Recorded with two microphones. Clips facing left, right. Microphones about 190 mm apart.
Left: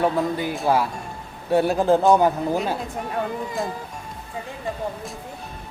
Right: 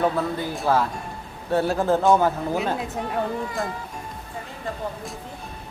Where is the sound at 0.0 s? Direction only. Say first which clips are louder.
Left 2 dB; 15° left (ahead or behind).